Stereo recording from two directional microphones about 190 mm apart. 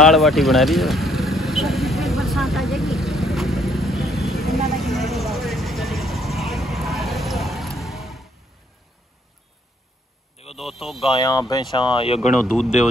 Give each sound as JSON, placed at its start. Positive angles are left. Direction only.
{"t": 0.0, "sound": "vehicle", "side_deg": 0}
{"t": 10.5, "sound": "a sound", "side_deg": 0}
{"t": 11.0, "sound": "speech", "side_deg": 25}
{"t": 12.3, "sound": "speech", "side_deg": 0}